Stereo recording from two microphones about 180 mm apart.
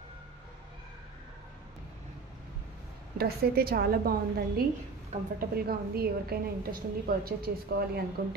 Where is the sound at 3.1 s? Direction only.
60° right (ahead or behind).